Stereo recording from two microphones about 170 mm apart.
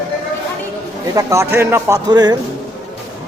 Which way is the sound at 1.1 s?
20° right (ahead or behind).